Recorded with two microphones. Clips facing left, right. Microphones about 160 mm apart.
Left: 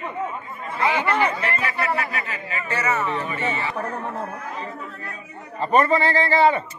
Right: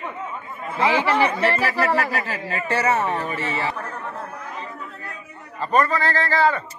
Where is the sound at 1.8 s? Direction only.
35° right (ahead or behind).